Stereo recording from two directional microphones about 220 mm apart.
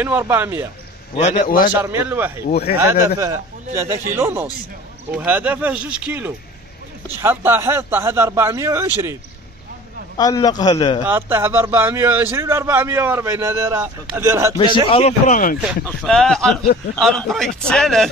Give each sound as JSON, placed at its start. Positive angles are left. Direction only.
{"t": 0.0, "sound": "a man's voice", "side_deg": -10}
{"t": 1.1, "sound": "a man's voice", "side_deg": 25}
{"t": 1.8, "sound": "a man's voice", "side_deg": -10}
{"t": 2.4, "sound": "speech", "side_deg": 45}
{"t": 2.8, "sound": "a man's voice", "side_deg": -15}
{"t": 10.1, "sound": "a man's voice", "side_deg": 15}
{"t": 11.1, "sound": "a man's voice", "side_deg": -10}
{"t": 14.9, "sound": "a man's voice", "side_deg": 25}
{"t": 15.6, "sound": "speech", "side_deg": 0}